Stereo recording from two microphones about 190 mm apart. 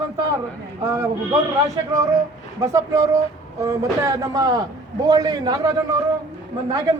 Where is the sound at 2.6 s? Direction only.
15° right (ahead or behind).